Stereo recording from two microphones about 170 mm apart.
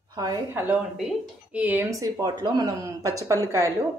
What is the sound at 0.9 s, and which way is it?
Speech, 5° right (ahead or behind).